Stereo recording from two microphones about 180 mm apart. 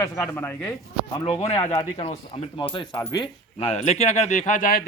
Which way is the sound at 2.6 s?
25° left (ahead or behind).